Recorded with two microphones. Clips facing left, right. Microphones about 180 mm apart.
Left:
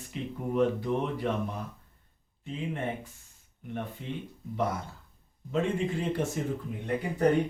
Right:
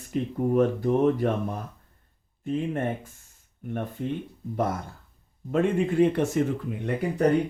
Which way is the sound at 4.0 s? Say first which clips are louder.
Right 8 dB; 45° right (ahead or behind).